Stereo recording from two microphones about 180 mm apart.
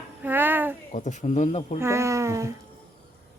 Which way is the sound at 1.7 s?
15° right (ahead or behind).